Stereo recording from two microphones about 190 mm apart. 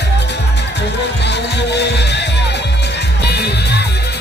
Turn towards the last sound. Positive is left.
turn(degrees=60)  # may be behind; listen again after turning